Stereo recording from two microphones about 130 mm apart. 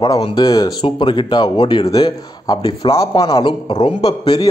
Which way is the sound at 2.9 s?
25° left (ahead or behind).